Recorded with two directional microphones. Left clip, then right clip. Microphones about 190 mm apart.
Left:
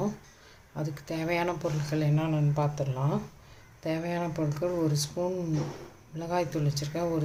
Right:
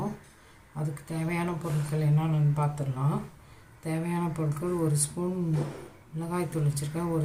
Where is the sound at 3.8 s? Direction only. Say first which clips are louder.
Left 2 dB; 40° left (ahead or behind).